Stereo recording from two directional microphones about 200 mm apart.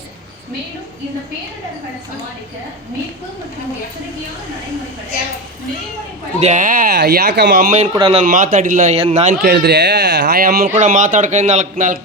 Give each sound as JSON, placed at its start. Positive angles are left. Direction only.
{"t": 6.4, "sound": "speech", "side_deg": -40}
{"t": 7.7, "sound": "speech", "side_deg": -30}
{"t": 8.2, "sound": "speech", "side_deg": -40}
{"t": 9.4, "sound": "speech", "side_deg": -55}